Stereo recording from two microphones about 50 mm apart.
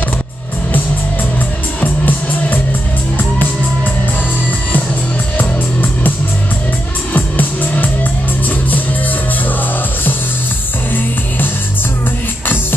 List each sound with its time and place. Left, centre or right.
1.8 s music: left
5.4 s music: left
7.2 s music: left